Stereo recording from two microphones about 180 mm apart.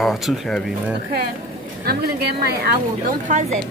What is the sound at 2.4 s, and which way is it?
A woman's voice, 60° right (ahead or behind).